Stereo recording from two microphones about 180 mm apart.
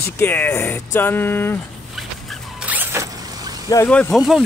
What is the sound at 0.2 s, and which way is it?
Speech, 10° left (ahead or behind).